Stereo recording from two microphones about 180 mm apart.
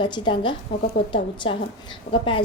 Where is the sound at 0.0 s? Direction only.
25° left (ahead or behind).